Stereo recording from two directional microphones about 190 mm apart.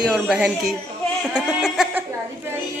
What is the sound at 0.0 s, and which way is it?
Speech, 5° right (ahead or behind).